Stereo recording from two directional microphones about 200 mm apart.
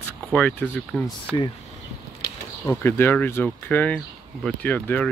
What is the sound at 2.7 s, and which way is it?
Speech, 10° left (ahead or behind).